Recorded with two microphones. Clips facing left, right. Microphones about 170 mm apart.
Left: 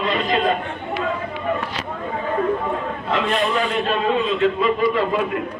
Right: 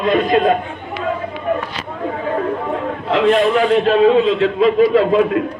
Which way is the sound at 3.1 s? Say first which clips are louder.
Right 8 dB; 65° right (ahead or behind).